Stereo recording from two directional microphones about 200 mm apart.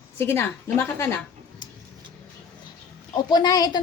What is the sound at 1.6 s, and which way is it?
Vehicle, 20° left (ahead or behind).